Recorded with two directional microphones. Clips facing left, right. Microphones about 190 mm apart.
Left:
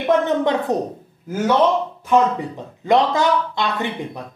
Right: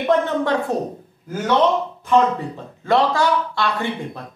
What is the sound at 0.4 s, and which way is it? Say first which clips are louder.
A woman's voice: left 1 dB; 20° left (ahead or behind).